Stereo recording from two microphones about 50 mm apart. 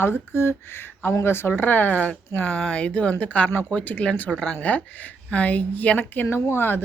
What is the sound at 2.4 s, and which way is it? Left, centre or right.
Speech, centre.